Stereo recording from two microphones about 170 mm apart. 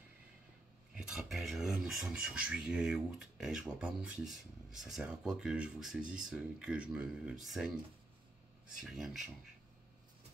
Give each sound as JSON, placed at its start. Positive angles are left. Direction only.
{"t": 0.9, "sound": "speech", "side_deg": -5}